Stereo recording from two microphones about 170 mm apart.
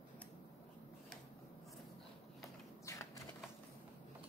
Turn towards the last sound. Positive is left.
turn(degrees=20)  # may be behind; listen again after turning